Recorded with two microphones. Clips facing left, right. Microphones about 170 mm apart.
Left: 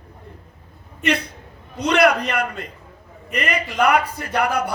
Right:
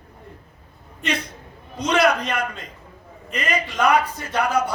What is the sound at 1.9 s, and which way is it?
A man's voice, 65° left (ahead or behind).